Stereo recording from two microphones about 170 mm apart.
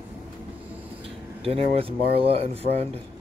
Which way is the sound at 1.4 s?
35° right (ahead or behind).